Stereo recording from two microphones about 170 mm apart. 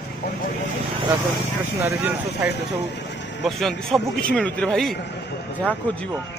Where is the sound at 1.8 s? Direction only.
10° right (ahead or behind).